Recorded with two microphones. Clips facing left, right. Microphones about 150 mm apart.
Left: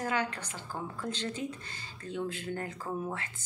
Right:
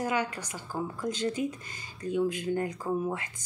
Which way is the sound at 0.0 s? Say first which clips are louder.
Right 2 dB; 10° right (ahead or behind).